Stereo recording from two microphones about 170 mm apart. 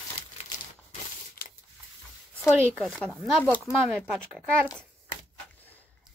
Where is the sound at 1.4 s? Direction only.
65° left (ahead or behind).